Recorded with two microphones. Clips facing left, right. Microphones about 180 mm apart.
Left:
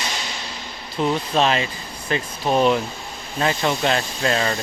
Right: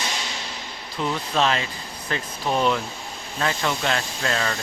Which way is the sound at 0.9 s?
25° left (ahead or behind).